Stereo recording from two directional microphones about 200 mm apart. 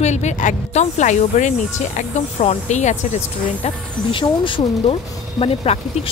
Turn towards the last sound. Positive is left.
turn(degrees=30)  # may be behind; listen again after turning